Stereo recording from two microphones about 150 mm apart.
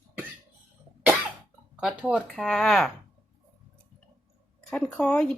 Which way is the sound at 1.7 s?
5° right (ahead or behind).